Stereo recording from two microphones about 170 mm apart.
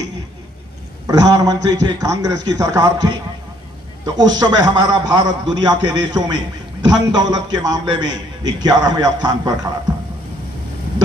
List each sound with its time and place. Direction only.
1.0 s a man's voice: 20° right (ahead or behind)